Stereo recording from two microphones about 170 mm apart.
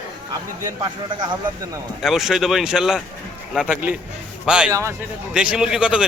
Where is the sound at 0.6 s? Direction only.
25° right (ahead or behind).